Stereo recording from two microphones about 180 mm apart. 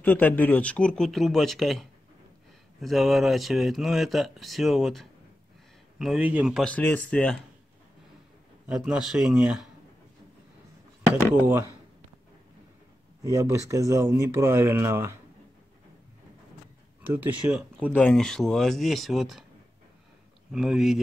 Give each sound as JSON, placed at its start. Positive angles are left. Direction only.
{"t": 0.0, "sound": "speech", "side_deg": 10}
{"t": 6.6, "sound": "speech", "side_deg": 10}
{"t": 8.6, "sound": "speech", "side_deg": 0}
{"t": 13.2, "sound": "speech", "side_deg": -15}
{"t": 17.0, "sound": "speech", "side_deg": -10}
{"t": 17.9, "sound": "speech", "side_deg": 5}
{"t": 20.5, "sound": "speech", "side_deg": 0}